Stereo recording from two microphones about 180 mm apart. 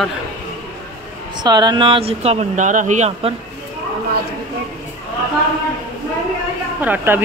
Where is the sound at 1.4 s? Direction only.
25° right (ahead or behind).